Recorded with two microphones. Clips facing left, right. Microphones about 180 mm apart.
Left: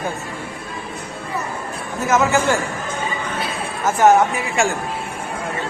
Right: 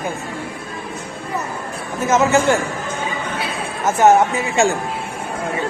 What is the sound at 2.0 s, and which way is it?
Speech, 20° right (ahead or behind).